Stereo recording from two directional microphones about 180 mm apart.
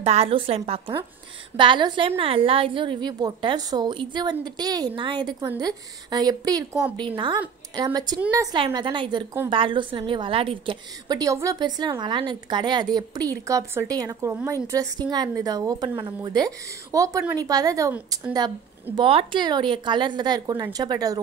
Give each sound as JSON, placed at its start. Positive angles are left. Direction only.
{"t": 0.0, "sound": "a woman's voice", "side_deg": -35}
{"t": 18.9, "sound": "a woman's voice", "side_deg": -30}